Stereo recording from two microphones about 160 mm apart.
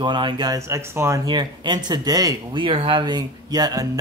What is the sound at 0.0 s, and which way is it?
Speech, 30° right (ahead or behind).